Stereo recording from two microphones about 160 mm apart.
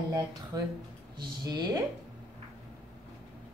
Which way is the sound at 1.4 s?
25° right (ahead or behind).